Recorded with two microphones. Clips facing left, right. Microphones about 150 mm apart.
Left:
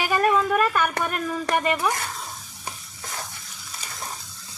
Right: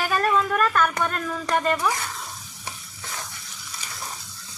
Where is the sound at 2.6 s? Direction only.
35° left (ahead or behind).